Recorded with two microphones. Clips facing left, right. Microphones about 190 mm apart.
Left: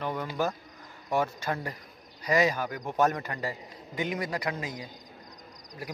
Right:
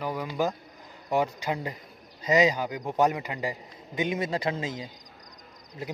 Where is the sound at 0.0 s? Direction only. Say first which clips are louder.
Right 2 dB; 10° right (ahead or behind).